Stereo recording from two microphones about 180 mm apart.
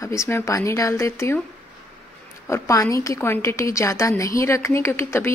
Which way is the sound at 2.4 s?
15° left (ahead or behind).